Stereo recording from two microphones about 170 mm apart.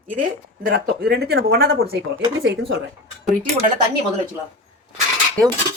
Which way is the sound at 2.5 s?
90° right.